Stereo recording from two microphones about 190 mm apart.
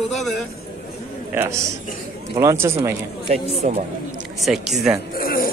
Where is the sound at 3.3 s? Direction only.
35° right (ahead or behind).